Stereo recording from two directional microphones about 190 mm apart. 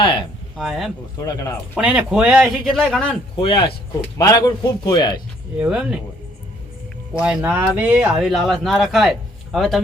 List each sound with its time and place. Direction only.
0.0 s speech: 25° left (ahead or behind)
0.5 s speech: centre (ahead or behind)
1.1 s speech: 15° left (ahead or behind)
1.7 s speech: 5° right (ahead or behind)
3.3 s a man's voice: 25° left (ahead or behind)
5.5 s speech: 5° right (ahead or behind)
7.1 s speech: 5° right (ahead or behind)